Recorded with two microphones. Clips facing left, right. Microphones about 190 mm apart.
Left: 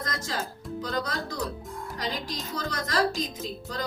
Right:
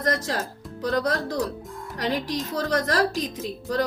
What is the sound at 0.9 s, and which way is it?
A woman's voice, 65° right (ahead or behind).